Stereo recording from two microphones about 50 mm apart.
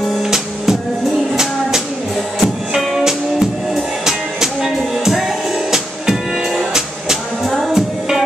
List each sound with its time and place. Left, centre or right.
0.1 s music: centre
7.4 s music: centre